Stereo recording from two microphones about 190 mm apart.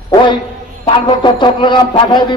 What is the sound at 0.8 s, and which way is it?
A man's voice, 25° left (ahead or behind).